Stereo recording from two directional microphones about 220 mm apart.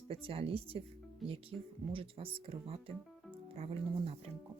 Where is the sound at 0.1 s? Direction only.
25° right (ahead or behind).